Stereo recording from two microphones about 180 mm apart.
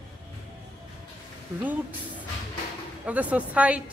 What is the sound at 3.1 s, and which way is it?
Speech, 10° right (ahead or behind).